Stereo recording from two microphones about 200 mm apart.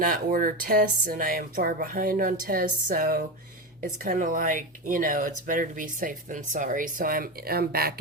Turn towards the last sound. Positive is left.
turn(degrees=-50)  # may be behind; listen again after turning